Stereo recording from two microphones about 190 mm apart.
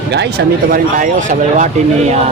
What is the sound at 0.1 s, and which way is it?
Speech, 60° right (ahead or behind).